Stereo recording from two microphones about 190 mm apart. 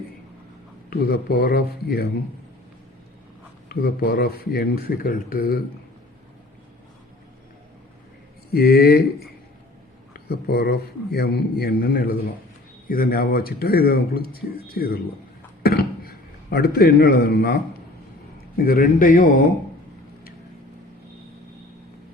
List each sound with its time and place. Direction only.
0.9 s speech: 50° left (ahead or behind)
3.7 s speech: 55° left (ahead or behind)
8.5 s a man's voice: 55° left (ahead or behind)
10.2 s a man's voice: 55° left (ahead or behind)
15.6 s a sound: 55° left (ahead or behind)
18.6 s speech: 50° left (ahead or behind)